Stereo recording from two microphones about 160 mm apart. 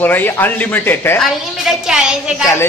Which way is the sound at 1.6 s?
5° right (ahead or behind).